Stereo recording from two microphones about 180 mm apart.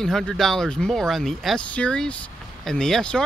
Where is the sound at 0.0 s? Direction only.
5° left (ahead or behind).